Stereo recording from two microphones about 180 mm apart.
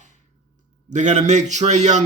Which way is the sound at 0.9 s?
40° right (ahead or behind).